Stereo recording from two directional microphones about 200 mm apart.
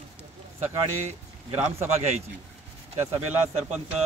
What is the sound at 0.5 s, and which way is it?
Speech, 35° right (ahead or behind).